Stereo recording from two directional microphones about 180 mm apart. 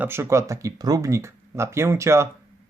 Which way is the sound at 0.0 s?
15° right (ahead or behind).